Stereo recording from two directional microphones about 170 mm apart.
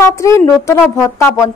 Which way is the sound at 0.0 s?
20° left (ahead or behind).